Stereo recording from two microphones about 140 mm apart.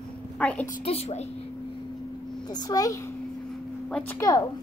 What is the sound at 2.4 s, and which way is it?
Speech, 30° left (ahead or behind).